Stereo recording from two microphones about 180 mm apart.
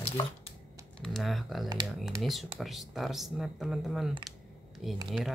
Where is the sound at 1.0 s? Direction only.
Centre (ahead or behind).